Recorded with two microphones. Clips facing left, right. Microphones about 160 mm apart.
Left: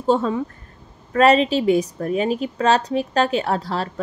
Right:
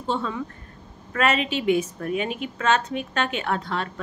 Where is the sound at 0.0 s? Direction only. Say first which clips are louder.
Left 8 dB; 40° left (ahead or behind).